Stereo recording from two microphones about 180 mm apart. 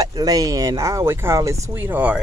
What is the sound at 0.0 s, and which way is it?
Speech, 20° right (ahead or behind).